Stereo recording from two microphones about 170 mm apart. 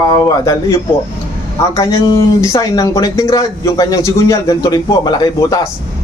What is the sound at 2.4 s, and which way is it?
Speech, 20° left (ahead or behind).